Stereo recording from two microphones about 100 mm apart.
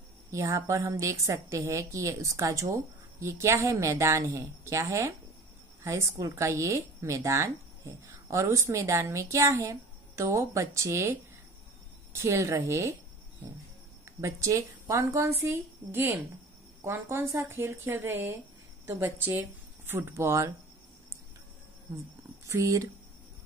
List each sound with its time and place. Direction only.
0.3 s a woman's voice: 30° right (ahead or behind)
14.2 s a woman's voice: 30° right (ahead or behind)
15.3 s a woman's voice: 20° right (ahead or behind)
22.5 s a woman's voice: 30° right (ahead or behind)